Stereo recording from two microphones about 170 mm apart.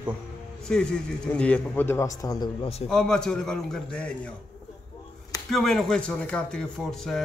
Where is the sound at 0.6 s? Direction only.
5° left (ahead or behind); by 2.7 s 25° left (ahead or behind).